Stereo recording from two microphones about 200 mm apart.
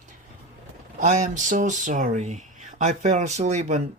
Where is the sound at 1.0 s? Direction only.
35° right (ahead or behind).